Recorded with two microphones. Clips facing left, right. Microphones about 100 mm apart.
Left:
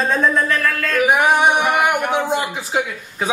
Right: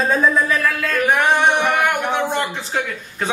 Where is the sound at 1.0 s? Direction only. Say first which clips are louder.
Left 1 dB; 10° left (ahead or behind).